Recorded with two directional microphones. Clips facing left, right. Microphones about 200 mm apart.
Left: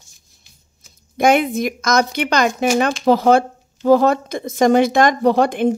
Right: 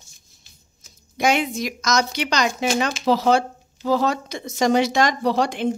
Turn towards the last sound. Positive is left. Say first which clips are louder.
# left 6 dB
turn(degrees=55)  # may be behind; listen again after turning